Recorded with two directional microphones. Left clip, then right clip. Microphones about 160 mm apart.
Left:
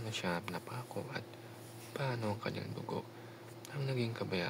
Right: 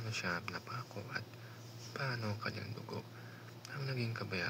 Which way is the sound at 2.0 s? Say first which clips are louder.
Left 1 dB; 50° left (ahead or behind).